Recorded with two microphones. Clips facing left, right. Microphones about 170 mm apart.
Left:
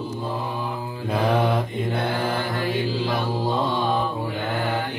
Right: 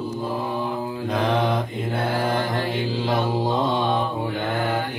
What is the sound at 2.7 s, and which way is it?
Mantra, 20° right (ahead or behind).